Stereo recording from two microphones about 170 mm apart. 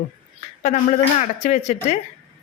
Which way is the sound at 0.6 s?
45° left (ahead or behind).